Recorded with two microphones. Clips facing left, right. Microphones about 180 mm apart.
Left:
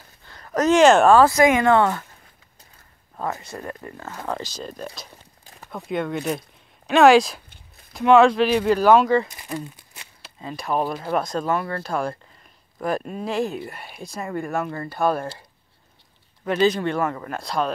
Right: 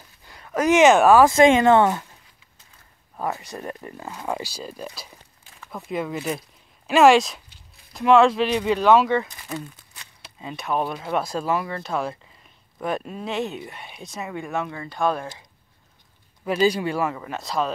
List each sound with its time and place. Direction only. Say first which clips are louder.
0.6 s speech: left 1 dB; 15° right (ahead or behind)
1.3 s speech: right 2 dB; 25° right (ahead or behind)
3.2 s speech: even; 15° right (ahead or behind)
5.4 s a sound: left 3 dB; 40° left (ahead or behind)
5.9 s speech: left 2 dB; centre (ahead or behind)
9.3 s crumpling: left 2 dB; 20° left (ahead or behind)
10.4 s speech: left 1 dB; centre (ahead or behind)
16.4 s speech: left 1 dB; 10° right (ahead or behind)